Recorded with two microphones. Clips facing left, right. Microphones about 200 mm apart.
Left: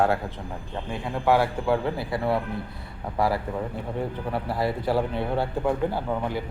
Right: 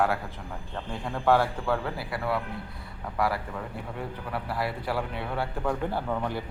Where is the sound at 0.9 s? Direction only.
10° left (ahead or behind).